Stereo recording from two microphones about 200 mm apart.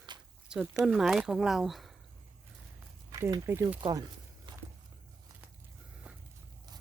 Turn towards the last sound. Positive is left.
turn(degrees=-5)  # may be behind; listen again after turning